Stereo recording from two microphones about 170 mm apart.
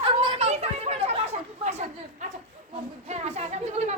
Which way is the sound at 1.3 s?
40° right (ahead or behind).